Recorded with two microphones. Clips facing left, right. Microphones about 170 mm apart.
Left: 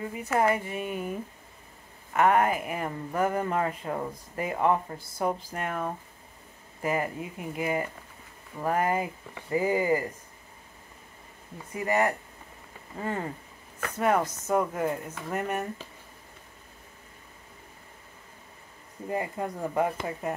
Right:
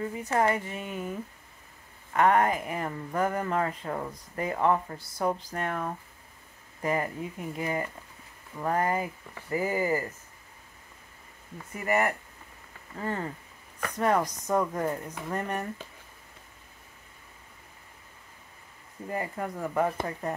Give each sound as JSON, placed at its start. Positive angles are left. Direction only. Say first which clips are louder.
{"t": 0.1, "sound": "speech", "louder": "left 2 dB", "side_deg": 10}
{"t": 2.2, "sound": "speech", "louder": "even", "side_deg": 10}
{"t": 11.8, "sound": "speech", "louder": "left 1 dB", "side_deg": 20}
{"t": 13.7, "sound": "speech", "louder": "even", "side_deg": 5}
{"t": 19.0, "sound": "speech", "louder": "left 2 dB", "side_deg": 20}